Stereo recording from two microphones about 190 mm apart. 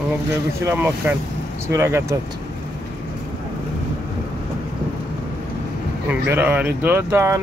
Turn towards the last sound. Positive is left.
turn(degrees=-15)  # may be behind; listen again after turning